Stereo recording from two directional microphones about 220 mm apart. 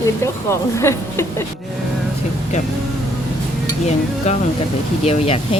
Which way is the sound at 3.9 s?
30° left (ahead or behind).